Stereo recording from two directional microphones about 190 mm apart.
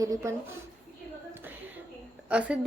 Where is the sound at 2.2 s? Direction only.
5° right (ahead or behind).